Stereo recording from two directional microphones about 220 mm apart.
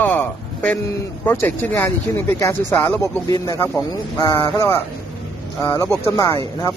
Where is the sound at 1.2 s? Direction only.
5° left (ahead or behind).